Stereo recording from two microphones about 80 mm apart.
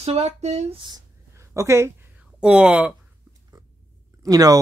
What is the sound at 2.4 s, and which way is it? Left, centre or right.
Speech, centre.